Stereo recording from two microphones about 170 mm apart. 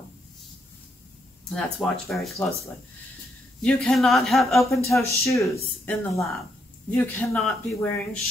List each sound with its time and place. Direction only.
1.5 s speech: centre (ahead or behind)
3.6 s speech: 5° left (ahead or behind)
4.6 s speech: 15° left (ahead or behind)